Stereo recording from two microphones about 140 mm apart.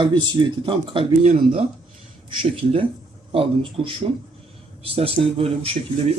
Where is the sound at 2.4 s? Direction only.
40° right (ahead or behind).